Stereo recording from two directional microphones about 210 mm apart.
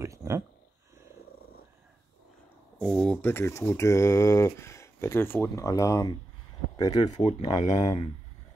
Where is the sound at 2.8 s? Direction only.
5° left (ahead or behind); by 8.0 s 20° left (ahead or behind).